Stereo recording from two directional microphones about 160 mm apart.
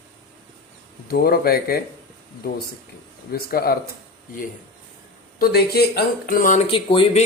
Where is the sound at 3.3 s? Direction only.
75° left (ahead or behind).